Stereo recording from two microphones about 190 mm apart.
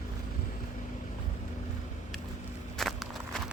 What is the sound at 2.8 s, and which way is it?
Walk, centre (ahead or behind).